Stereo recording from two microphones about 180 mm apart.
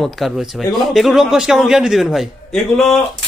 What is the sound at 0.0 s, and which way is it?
A man's voice, centre (ahead or behind).